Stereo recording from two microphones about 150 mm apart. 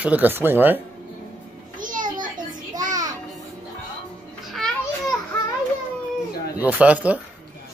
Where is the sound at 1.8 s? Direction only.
60° right (ahead or behind).